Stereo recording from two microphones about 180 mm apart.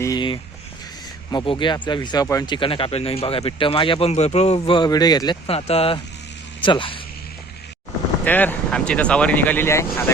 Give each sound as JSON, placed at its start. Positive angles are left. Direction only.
{"t": 0.0, "sound": "a sound", "side_deg": 20}
{"t": 1.3, "sound": "speech", "side_deg": 25}
{"t": 2.6, "sound": "speech", "side_deg": 30}
{"t": 8.2, "sound": "speech", "side_deg": 10}